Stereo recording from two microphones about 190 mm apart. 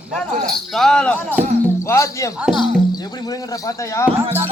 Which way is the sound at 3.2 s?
20° left (ahead or behind).